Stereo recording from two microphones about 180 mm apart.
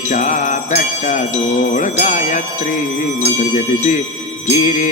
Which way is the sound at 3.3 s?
40° left (ahead or behind).